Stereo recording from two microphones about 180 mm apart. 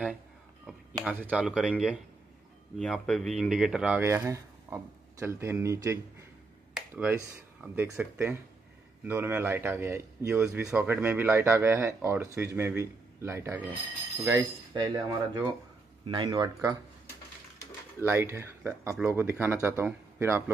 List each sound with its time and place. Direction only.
1.0 s a man's voice: 5° right (ahead or behind)
4.0 s a man's voice: 15° right (ahead or behind)
18.0 s a man's voice: 15° right (ahead or behind)